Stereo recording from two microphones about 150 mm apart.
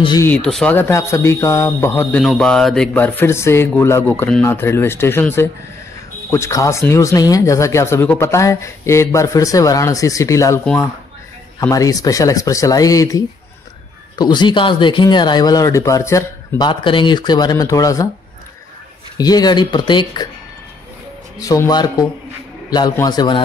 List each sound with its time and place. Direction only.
0.2 s speech: 10° left (ahead or behind)
0.7 s speech: 15° left (ahead or behind)
10.6 s speech: 5° left (ahead or behind)
11.7 s speech: 25° left (ahead or behind)
16.6 s speech: 35° left (ahead or behind)
19.1 s speech: 25° left (ahead or behind)
21.4 s a man's voice: 25° left (ahead or behind)